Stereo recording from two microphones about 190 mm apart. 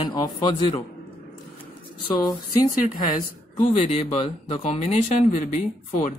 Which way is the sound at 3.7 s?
35° left (ahead or behind).